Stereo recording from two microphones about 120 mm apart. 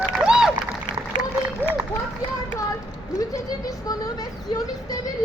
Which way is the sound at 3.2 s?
30° left (ahead or behind).